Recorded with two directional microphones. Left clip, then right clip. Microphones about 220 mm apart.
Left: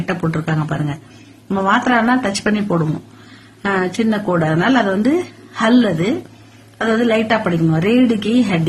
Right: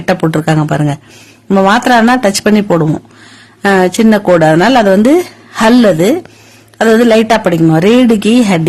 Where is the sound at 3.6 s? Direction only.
45° right (ahead or behind).